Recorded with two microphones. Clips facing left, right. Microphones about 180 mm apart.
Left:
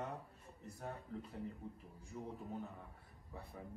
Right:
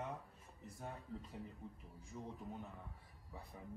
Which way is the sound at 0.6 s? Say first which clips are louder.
Left 2 dB; centre (ahead or behind).